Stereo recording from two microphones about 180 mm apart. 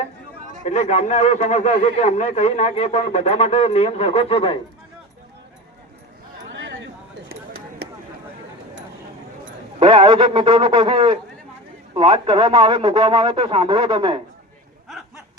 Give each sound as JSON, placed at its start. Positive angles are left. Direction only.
{"t": 0.6, "sound": "speech", "side_deg": 40}
{"t": 7.3, "sound": "a sound", "side_deg": -60}
{"t": 9.8, "sound": "speech", "side_deg": -25}